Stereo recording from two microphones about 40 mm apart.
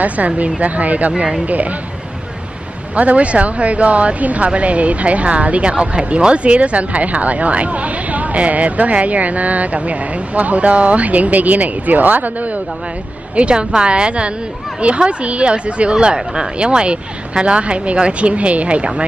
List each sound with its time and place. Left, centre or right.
0.0 s speech: right
1.1 s speech: right
3.0 s speech: right
13.4 s a woman's voice: right